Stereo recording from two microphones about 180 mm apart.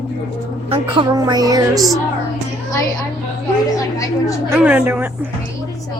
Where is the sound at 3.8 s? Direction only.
20° left (ahead or behind).